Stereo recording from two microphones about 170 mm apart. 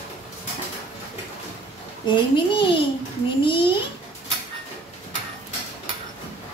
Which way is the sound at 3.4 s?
30° left (ahead or behind).